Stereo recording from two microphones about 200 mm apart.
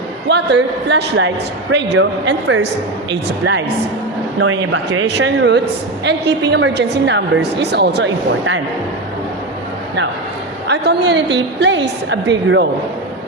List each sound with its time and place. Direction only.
0.3 s a woman's voice: 60° right (ahead or behind)
4.4 s a man's voice: 75° right (ahead or behind)
4.9 s a woman's voice: 65° right (ahead or behind)
10.7 s a woman's voice: 60° right (ahead or behind)